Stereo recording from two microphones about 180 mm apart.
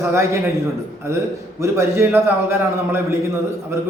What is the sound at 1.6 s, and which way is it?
A man's voice, 15° right (ahead or behind).